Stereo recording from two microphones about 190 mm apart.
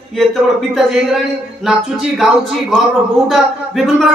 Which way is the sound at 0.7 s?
Centre (ahead or behind).